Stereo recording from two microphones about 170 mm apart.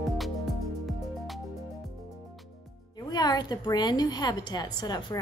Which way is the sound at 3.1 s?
25° left (ahead or behind).